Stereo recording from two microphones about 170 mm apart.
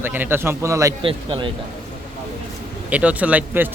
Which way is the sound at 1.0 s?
30° right (ahead or behind).